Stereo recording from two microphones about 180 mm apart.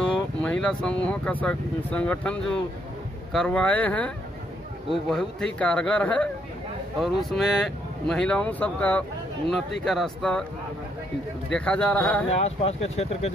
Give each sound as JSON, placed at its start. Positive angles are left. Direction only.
{"t": 0.0, "sound": "speech", "side_deg": 5}
{"t": 11.5, "sound": "speech", "side_deg": 5}
{"t": 12.3, "sound": "speech", "side_deg": 35}